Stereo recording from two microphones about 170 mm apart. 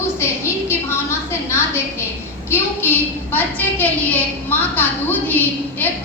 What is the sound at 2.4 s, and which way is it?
A woman's voice, 15° left (ahead or behind).